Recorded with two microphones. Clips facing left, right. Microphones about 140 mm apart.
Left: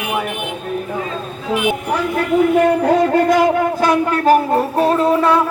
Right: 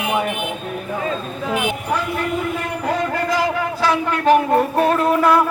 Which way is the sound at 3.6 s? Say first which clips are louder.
Left 4 dB; 45° left (ahead or behind).